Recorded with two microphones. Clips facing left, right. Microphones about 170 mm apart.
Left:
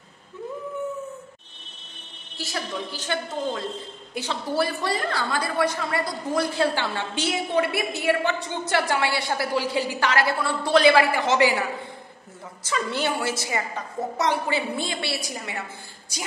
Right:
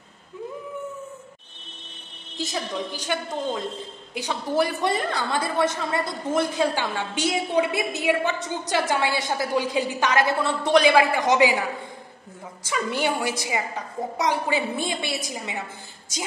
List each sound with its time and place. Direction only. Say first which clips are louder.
2.3 s a woman's voice: right 2 dB; 20° right (ahead or behind)
12.6 s a woman's voice: right 1 dB; 15° right (ahead or behind)